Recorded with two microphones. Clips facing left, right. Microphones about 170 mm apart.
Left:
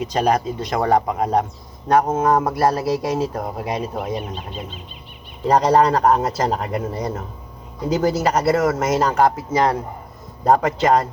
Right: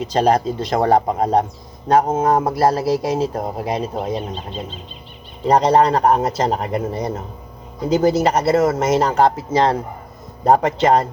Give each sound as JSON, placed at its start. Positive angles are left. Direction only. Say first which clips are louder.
{"t": 0.0, "sound": "speech", "louder": "right 3 dB", "side_deg": -30}